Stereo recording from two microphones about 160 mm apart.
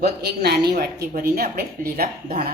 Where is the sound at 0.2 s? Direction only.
85° right.